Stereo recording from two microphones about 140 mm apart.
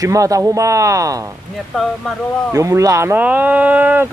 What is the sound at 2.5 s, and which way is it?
Speech, 20° right (ahead or behind).